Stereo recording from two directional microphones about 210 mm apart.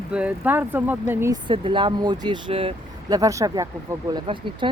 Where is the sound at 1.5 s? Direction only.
25° right (ahead or behind).